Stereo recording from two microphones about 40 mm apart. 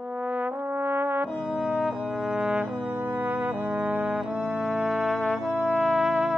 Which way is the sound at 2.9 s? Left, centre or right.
Right.